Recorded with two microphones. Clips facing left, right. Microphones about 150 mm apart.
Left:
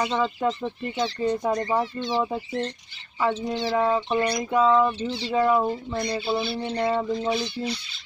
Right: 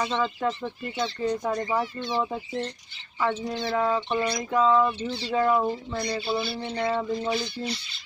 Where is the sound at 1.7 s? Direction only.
Centre (ahead or behind).